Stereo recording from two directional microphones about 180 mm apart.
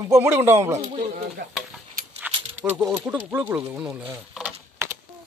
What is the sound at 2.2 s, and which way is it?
Keys jangling, 10° right (ahead or behind).